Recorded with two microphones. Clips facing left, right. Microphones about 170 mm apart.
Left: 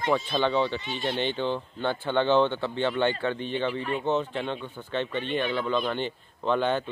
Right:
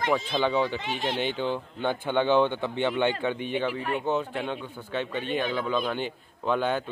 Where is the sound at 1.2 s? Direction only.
10° right (ahead or behind).